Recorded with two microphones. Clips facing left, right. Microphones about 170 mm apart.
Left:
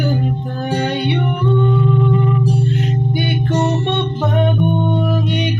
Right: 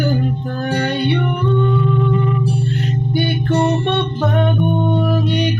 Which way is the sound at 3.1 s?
15° left (ahead or behind).